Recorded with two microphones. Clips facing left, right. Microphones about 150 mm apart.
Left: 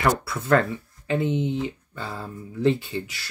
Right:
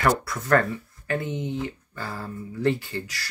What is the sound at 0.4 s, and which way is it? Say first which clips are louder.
Speech: left 1 dB; 20° left (ahead or behind).